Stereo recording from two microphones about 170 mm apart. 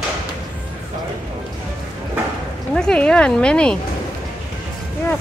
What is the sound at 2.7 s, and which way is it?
Speech, 5° left (ahead or behind).